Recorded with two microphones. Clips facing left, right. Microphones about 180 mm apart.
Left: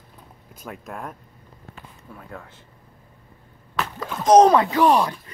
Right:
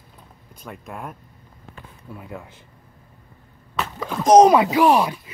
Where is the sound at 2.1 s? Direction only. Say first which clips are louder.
Right 3 dB; 10° right (ahead or behind).